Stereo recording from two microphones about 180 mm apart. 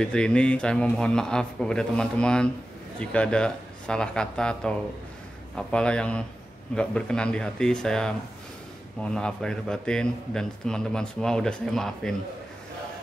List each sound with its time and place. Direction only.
0.0 s a man's voice: 5° left (ahead or behind)